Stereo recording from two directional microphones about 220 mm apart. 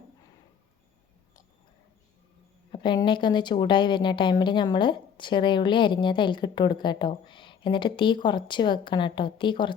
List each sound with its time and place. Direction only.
2.7 s a woman's voice: 20° left (ahead or behind)